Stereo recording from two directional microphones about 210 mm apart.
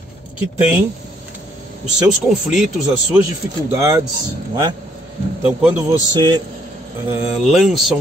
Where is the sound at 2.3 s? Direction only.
Centre (ahead or behind).